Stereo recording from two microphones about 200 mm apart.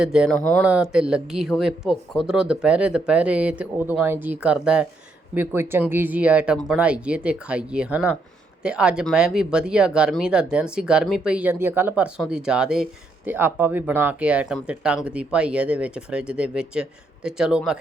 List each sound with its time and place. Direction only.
0.0 s speech: 5° right (ahead or behind)